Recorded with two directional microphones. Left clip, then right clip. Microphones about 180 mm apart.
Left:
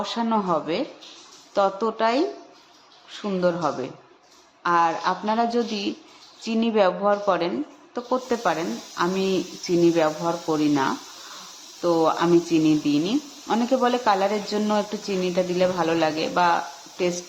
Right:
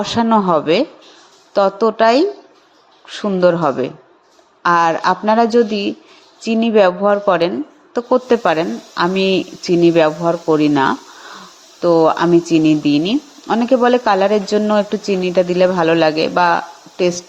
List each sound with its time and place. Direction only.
0.0 s speech: 35° right (ahead or behind)